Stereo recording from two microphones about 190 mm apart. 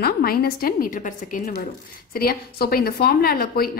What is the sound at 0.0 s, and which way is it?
A woman's voice, 55° left (ahead or behind).